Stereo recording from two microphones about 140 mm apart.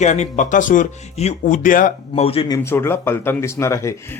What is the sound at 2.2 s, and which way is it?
Speech, 45° left (ahead or behind).